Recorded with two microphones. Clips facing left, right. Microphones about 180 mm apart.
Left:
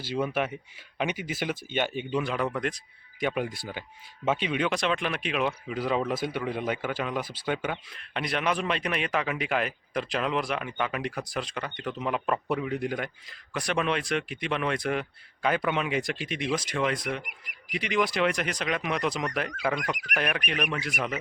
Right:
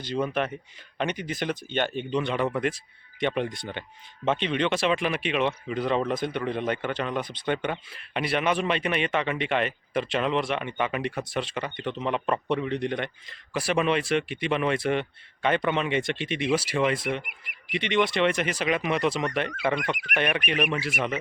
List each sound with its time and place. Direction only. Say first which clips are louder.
0.0 s speech: right 1 dB; 5° left (ahead or behind)